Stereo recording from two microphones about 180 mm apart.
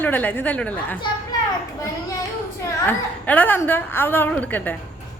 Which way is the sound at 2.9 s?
10° left (ahead or behind).